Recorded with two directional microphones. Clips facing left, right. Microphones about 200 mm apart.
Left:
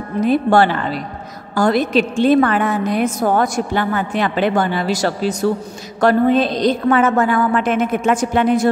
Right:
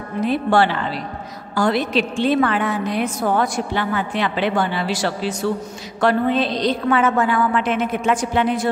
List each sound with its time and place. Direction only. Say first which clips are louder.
0.2 s a woman's voice: left 4 dB; 45° left (ahead or behind)